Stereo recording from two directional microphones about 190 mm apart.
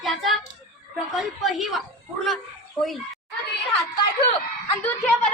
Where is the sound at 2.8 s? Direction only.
Centre (ahead or behind).